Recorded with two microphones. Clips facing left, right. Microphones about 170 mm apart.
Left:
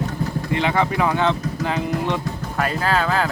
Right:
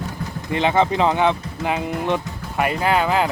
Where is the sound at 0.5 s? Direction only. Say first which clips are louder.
Right 3 dB; 20° right (ahead or behind).